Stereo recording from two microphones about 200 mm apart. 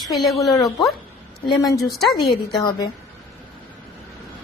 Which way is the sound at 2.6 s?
20° left (ahead or behind).